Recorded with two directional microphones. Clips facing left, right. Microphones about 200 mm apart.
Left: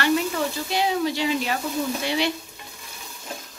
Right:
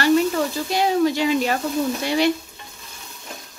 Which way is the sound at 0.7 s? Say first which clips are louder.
Right 5 dB; 45° right (ahead or behind).